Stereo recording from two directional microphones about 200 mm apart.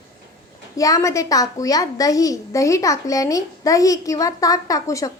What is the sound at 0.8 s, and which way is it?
A child's voice, 15° left (ahead or behind).